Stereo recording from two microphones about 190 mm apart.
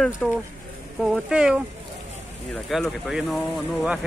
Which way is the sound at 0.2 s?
5° left (ahead or behind).